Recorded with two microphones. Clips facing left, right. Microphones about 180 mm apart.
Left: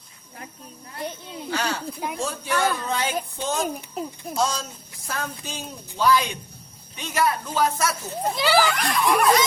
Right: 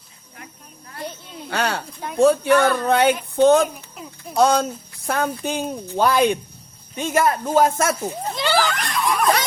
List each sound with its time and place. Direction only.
1.5 s speech: 60° right (ahead or behind)
8.4 s speech: 5° left (ahead or behind)